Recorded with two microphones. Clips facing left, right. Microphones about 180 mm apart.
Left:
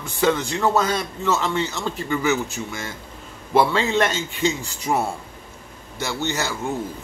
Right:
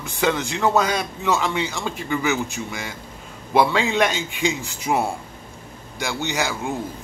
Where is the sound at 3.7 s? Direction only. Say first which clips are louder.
Even; 10° right (ahead or behind).